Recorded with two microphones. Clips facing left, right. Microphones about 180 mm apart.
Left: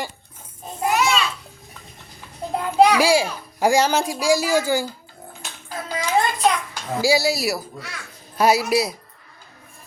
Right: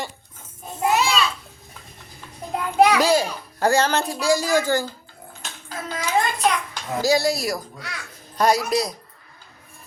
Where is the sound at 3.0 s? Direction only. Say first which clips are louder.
Left 1 dB; 10° left (ahead or behind).